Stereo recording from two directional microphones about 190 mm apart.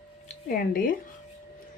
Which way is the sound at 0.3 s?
50° left (ahead or behind).